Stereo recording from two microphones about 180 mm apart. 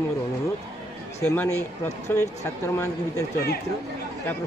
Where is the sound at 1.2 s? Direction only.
10° left (ahead or behind).